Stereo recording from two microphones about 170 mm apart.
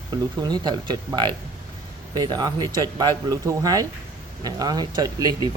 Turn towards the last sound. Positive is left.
turn(degrees=-20)  # may be behind; listen again after turning